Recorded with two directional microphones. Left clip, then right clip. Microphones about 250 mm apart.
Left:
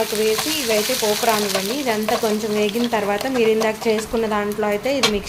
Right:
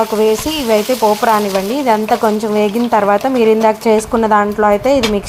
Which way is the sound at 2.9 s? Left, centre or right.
Centre.